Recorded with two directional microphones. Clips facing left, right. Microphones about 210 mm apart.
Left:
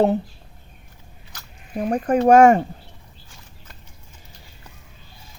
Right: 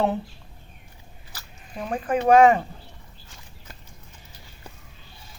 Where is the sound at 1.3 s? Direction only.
5° right (ahead or behind).